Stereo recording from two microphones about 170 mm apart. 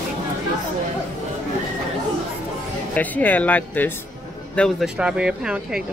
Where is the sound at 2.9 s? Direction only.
10° left (ahead or behind).